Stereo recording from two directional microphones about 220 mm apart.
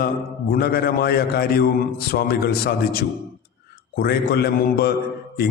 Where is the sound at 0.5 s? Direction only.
45° left (ahead or behind).